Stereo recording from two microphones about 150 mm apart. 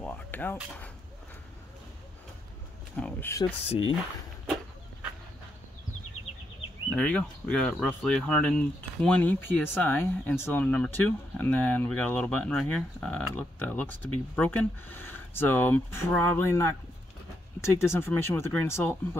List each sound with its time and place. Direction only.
0.0 s speech: 10° left (ahead or behind)
3.0 s speech: 5° left (ahead or behind)
3.3 s speech: 20° left (ahead or behind)
3.6 s speech: 45° left (ahead or behind)
7.0 s speech: 10° left (ahead or behind)
17.7 s speech: 15° left (ahead or behind)